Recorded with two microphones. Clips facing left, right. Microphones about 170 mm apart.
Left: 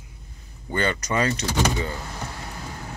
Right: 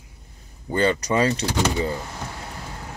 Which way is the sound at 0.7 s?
30° right (ahead or behind).